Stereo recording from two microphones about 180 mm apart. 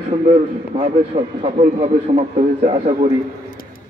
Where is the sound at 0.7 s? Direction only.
35° right (ahead or behind).